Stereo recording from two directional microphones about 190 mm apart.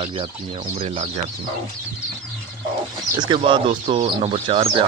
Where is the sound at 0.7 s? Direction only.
30° right (ahead or behind).